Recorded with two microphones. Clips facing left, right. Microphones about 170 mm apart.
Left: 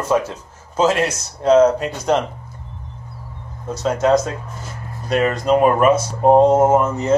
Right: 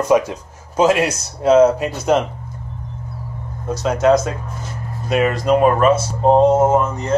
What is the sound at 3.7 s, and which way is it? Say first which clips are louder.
Speech: right 1 dB; centre (ahead or behind).